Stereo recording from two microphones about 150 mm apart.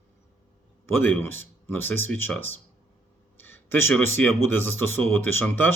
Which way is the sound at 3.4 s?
15° left (ahead or behind).